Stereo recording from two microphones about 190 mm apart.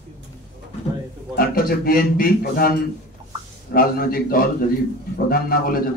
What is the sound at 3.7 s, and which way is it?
Speech, 50° left (ahead or behind).